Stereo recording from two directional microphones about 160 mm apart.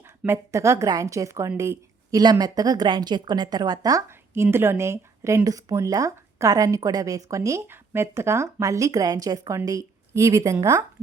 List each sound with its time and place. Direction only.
0.2 s speech: 15° right (ahead or behind)